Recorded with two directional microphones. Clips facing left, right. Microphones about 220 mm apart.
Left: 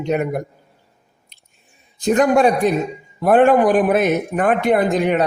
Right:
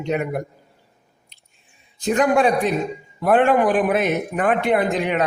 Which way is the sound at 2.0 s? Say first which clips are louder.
Left 3 dB; 40° left (ahead or behind).